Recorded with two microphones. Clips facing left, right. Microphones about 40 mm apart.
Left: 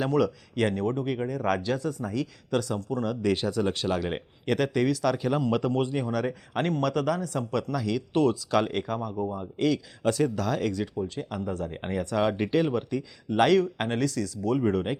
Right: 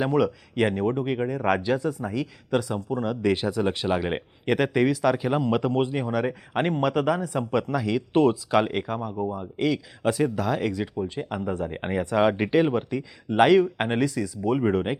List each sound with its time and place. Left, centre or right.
0.0 s speech: centre